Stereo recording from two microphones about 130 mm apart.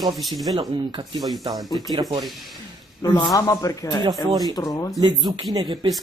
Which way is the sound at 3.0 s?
30° left (ahead or behind).